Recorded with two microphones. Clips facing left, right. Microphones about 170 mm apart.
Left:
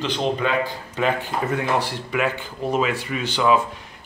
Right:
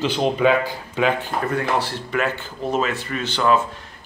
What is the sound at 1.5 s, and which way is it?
Speech, 15° left (ahead or behind).